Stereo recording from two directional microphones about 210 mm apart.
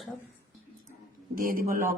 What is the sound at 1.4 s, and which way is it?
Speech, 40° right (ahead or behind).